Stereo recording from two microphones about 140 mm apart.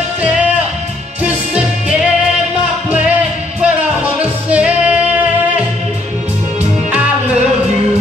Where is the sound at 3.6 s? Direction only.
10° right (ahead or behind).